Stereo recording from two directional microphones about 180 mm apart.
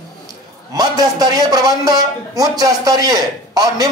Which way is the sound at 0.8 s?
20° right (ahead or behind).